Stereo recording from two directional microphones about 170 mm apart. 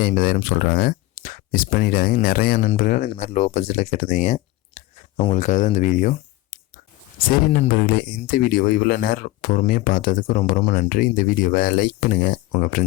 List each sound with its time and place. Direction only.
0.0 s speech: 60° left (ahead or behind)
3.1 s speech: 40° left (ahead or behind)